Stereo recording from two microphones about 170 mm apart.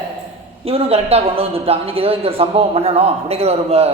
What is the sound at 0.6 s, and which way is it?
A man's voice, 35° right (ahead or behind).